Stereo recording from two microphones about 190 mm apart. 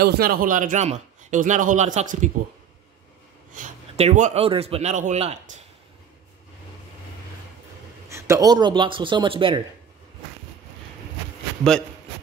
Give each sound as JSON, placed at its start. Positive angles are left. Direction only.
{"t": 0.0, "sound": "a man's voice", "side_deg": -50}
{"t": 3.5, "sound": "a man's voice", "side_deg": -35}
{"t": 8.1, "sound": "speech", "side_deg": -15}